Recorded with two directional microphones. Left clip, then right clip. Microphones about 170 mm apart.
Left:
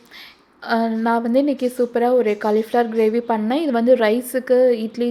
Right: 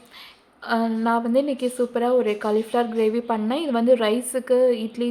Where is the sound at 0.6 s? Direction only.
20° left (ahead or behind).